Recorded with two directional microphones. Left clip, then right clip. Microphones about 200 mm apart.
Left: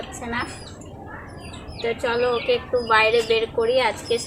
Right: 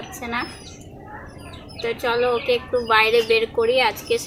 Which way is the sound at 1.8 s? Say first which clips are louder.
Right 1 dB; 40° right (ahead or behind).